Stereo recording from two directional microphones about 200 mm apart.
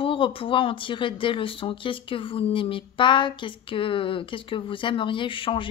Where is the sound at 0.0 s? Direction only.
25° left (ahead or behind).